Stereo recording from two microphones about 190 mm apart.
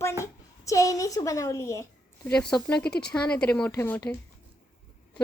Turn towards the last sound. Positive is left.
turn(degrees=10)  # may be behind; listen again after turning